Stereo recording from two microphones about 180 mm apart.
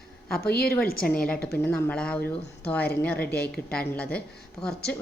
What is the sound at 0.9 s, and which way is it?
A woman's voice, 5° left (ahead or behind).